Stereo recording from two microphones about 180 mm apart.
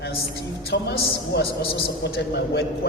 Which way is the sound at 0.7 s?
65° left (ahead or behind).